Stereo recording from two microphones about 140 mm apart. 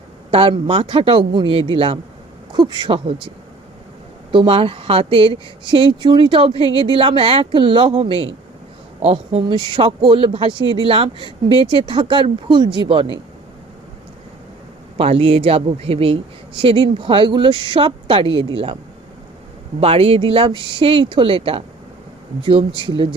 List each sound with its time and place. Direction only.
0.3 s speech: 40° right (ahead or behind)
14.9 s speech: 45° right (ahead or behind)
19.8 s speech: 45° right (ahead or behind)